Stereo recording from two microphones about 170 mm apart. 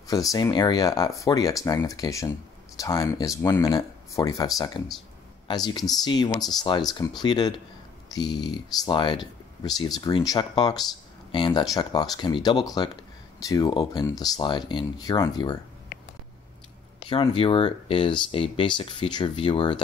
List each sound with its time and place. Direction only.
0.0 s speech: 20° left (ahead or behind)
17.1 s speech: 30° left (ahead or behind)